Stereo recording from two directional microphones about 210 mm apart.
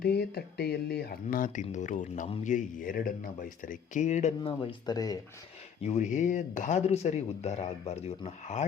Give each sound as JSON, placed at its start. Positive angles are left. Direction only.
{"t": 0.0, "sound": "speech", "side_deg": 50}
{"t": 5.8, "sound": "speech", "side_deg": 35}